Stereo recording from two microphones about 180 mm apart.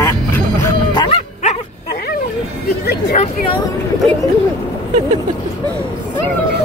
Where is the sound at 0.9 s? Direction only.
30° left (ahead or behind).